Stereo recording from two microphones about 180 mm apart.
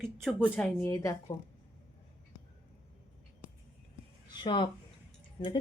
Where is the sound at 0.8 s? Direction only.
15° left (ahead or behind).